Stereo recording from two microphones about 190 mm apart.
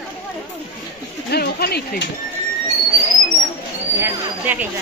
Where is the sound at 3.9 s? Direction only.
10° right (ahead or behind).